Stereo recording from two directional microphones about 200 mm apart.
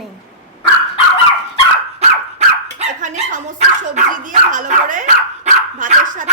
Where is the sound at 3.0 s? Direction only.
40° right (ahead or behind).